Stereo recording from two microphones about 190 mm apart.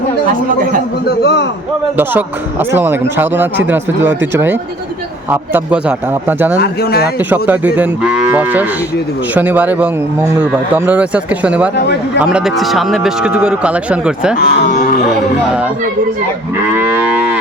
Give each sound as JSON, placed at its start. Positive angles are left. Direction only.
{"t": 1.0, "sound": "speech", "side_deg": 60}
{"t": 2.7, "sound": "moo", "side_deg": -10}
{"t": 6.6, "sound": "speech", "side_deg": 55}
{"t": 7.3, "sound": "moo", "side_deg": -10}
{"t": 12.2, "sound": "speech", "side_deg": -5}
{"t": 14.4, "sound": "speech", "side_deg": 45}
{"t": 16.7, "sound": "moo", "side_deg": -10}